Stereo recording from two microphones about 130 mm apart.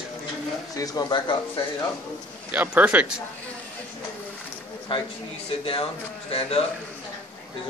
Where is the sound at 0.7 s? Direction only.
30° left (ahead or behind).